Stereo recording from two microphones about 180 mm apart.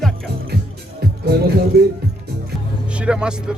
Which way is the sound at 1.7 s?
65° right (ahead or behind).